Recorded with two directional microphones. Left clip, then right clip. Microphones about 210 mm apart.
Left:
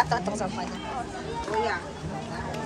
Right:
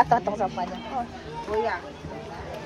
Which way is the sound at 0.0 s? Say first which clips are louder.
Right 5 dB; 25° right (ahead or behind).